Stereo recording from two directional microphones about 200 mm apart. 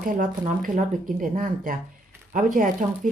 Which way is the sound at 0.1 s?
40° right (ahead or behind).